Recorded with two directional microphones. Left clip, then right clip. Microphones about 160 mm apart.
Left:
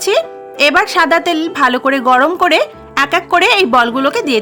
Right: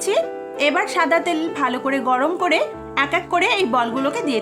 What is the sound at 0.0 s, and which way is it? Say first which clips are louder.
Speech: left 6 dB; 35° left (ahead or behind).